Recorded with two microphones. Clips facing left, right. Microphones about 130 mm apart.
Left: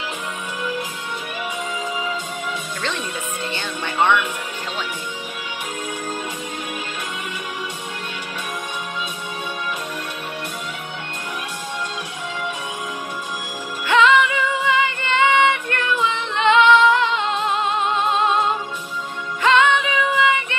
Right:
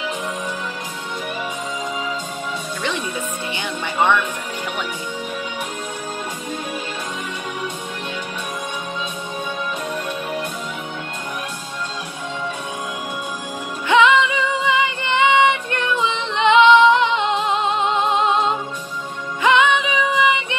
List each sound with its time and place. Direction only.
13.8 s music: 20° right (ahead or behind)